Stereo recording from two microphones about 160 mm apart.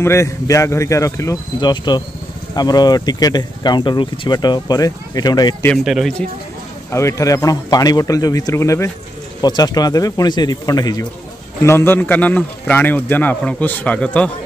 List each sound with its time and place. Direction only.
0.0 s speech: 15° left (ahead or behind)
5.9 s speech: centre (ahead or behind)
6.9 s a man's voice: 20° left (ahead or behind)